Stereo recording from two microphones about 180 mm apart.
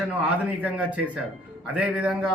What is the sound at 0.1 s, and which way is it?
A man's voice, 10° right (ahead or behind).